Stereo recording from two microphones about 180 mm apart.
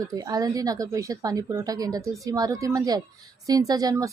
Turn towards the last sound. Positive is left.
turn(degrees=-20)  # may be behind; listen again after turning